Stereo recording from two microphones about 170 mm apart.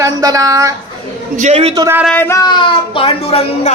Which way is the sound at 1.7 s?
20° right (ahead or behind).